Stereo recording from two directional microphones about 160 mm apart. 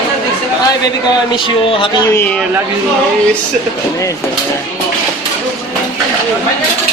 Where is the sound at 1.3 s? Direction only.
35° left (ahead or behind).